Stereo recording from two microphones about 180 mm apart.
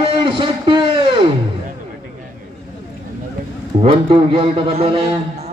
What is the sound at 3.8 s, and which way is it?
A man's voice, 30° right (ahead or behind).